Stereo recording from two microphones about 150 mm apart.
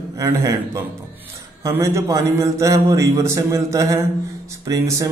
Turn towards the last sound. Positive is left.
turn(degrees=-20)  # may be behind; listen again after turning